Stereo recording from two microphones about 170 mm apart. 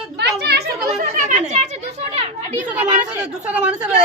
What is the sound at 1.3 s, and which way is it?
Speech, 45° right (ahead or behind).